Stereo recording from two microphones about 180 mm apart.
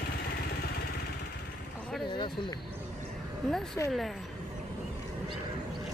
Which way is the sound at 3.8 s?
15° left (ahead or behind).